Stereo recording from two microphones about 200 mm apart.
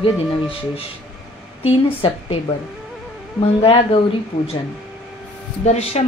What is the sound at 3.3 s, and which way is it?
Speech, 25° left (ahead or behind).